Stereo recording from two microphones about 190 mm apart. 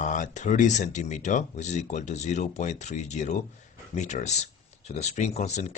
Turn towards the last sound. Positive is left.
turn(degrees=40)  # may be behind; listen again after turning